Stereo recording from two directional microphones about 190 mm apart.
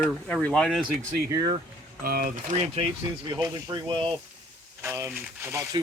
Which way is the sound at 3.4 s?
20° right (ahead or behind).